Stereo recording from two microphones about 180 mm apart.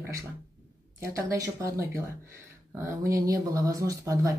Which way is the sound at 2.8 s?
15° right (ahead or behind).